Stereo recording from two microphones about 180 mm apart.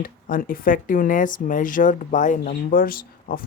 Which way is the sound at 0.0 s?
50° left (ahead or behind).